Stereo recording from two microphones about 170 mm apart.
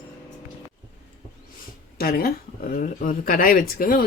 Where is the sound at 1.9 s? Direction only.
60° left (ahead or behind).